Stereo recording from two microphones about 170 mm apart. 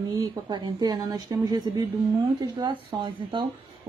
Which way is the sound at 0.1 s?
25° right (ahead or behind).